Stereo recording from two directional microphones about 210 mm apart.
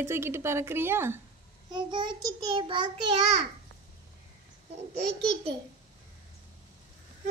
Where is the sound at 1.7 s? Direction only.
20° right (ahead or behind).